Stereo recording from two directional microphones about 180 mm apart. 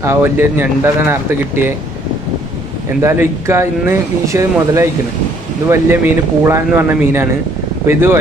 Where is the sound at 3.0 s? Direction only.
15° right (ahead or behind).